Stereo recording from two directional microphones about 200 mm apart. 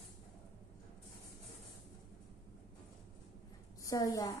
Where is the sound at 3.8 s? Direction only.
20° left (ahead or behind).